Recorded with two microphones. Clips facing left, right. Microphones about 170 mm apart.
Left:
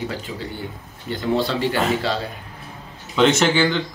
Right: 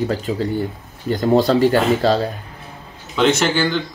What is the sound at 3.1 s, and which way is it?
Speech, centre (ahead or behind).